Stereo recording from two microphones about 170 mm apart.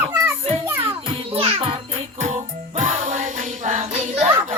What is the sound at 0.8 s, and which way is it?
Music, 35° right (ahead or behind).